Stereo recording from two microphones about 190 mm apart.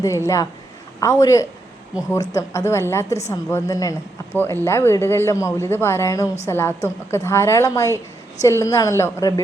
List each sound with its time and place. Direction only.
0.0 s speech: 15° left (ahead or behind)